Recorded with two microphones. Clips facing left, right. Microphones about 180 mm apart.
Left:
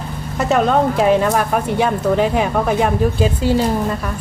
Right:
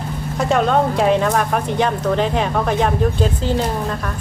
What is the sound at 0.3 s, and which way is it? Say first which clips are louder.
Speech: left 1 dB; 5° left (ahead or behind).